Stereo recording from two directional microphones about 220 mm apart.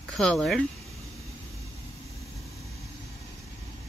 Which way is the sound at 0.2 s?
Centre (ahead or behind).